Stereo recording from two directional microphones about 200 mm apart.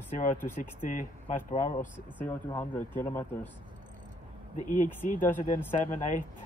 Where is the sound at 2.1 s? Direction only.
15° left (ahead or behind).